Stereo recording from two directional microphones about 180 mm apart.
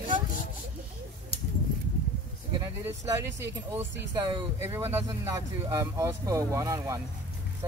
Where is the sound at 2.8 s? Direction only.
15° right (ahead or behind).